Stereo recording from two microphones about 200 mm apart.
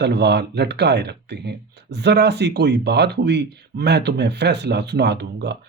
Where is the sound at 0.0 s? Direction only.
55° right (ahead or behind).